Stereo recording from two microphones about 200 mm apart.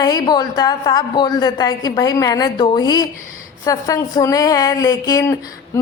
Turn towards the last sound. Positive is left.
turn(degrees=20)  # may be behind; listen again after turning